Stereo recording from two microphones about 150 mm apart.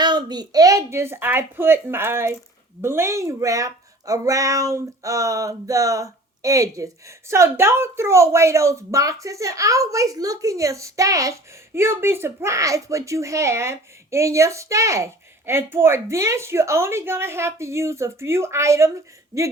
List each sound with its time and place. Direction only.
0.0 s a woman's voice: 30° right (ahead or behind)